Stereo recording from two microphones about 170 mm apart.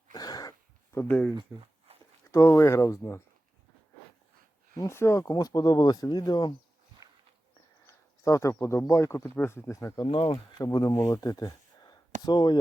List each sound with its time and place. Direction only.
0.1 s a sound: 20° left (ahead or behind)
0.9 s speech: 15° left (ahead or behind)
1.5 s speech: 10° right (ahead or behind)
1.9 s a sound: 35° right (ahead or behind)
2.3 s speech: 15° left (ahead or behind)
4.7 s speech: 15° left (ahead or behind)
7.0 s a sound: 20° right (ahead or behind)
7.9 s speech: 15° left (ahead or behind)
10.3 s speech: 20° left (ahead or behind)